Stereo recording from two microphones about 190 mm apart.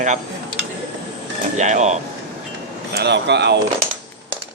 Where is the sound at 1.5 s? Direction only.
40° right (ahead or behind).